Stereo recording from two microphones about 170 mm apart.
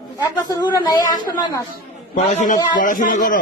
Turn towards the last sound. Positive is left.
turn(degrees=50)  # may be behind; listen again after turning